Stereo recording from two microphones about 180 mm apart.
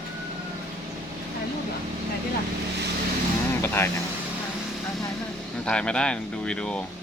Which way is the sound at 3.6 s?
10° left (ahead or behind).